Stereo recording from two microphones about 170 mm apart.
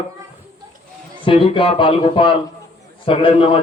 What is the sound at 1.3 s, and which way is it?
A man's voice, 30° left (ahead or behind).